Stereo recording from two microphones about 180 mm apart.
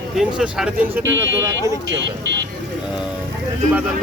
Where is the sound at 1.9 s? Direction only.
80° right.